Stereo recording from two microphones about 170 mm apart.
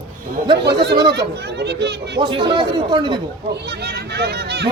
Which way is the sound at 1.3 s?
80° right.